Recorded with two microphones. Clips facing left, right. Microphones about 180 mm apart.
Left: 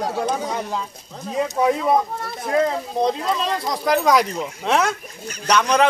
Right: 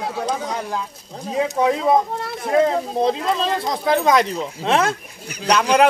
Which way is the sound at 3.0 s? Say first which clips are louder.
Even; 30° right (ahead or behind).